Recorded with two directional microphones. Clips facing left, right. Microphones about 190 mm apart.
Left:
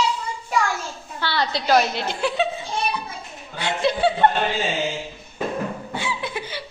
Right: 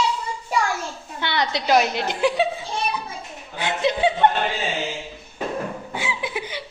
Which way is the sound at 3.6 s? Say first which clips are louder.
Even; 15° right (ahead or behind).